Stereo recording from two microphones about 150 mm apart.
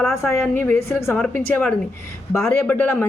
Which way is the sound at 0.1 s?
20° left (ahead or behind).